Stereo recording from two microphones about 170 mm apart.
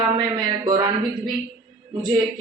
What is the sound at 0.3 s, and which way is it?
Speech, 25° right (ahead or behind).